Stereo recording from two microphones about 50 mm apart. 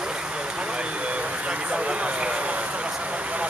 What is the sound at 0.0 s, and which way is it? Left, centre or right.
Vehicle, centre.